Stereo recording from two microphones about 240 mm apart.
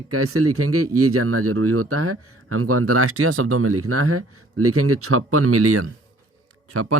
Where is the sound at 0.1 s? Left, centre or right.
Right.